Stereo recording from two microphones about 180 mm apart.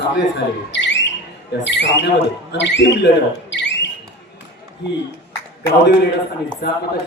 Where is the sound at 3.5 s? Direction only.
75° left (ahead or behind).